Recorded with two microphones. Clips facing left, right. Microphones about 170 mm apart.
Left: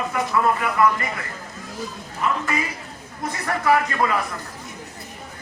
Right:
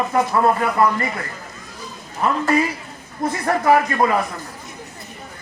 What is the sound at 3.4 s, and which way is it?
Speech, 30° right (ahead or behind).